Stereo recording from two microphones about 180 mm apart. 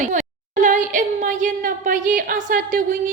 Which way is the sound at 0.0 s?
45° right (ahead or behind).